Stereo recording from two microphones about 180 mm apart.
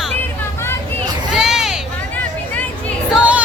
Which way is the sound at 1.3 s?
5° right (ahead or behind).